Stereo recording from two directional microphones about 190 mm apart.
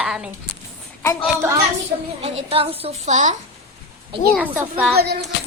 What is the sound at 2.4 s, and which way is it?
Speech, 30° right (ahead or behind).